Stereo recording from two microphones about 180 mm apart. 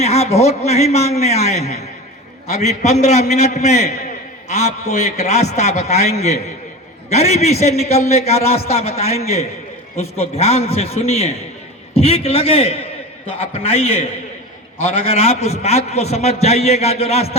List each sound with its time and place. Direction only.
0.0 s a man's voice: 35° left (ahead or behind)